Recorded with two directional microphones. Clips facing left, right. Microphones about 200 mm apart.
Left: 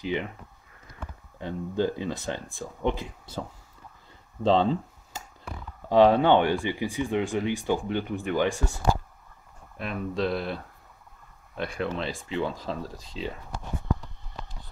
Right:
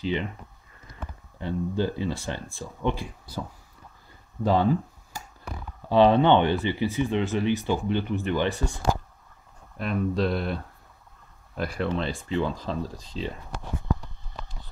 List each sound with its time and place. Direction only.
0.0 s speech: 15° left (ahead or behind)
1.4 s speech: 15° left (ahead or behind)
4.4 s a sound: 25° left (ahead or behind)
5.9 s speech: 15° left (ahead or behind)
9.8 s speech: centre (ahead or behind)